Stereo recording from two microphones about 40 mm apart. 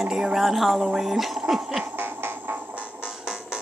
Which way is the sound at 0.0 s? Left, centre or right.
Centre.